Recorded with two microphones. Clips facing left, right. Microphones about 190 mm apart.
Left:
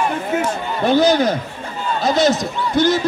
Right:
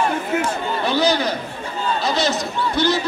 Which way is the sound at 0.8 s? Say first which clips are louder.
Left 6 dB; 50° left (ahead or behind).